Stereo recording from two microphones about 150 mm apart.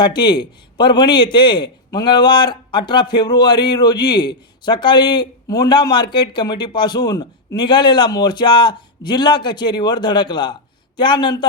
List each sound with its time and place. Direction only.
0.0 s a man's voice: 30° left (ahead or behind)